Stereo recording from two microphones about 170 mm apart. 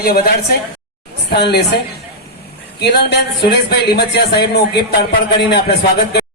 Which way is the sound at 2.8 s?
75° left (ahead or behind).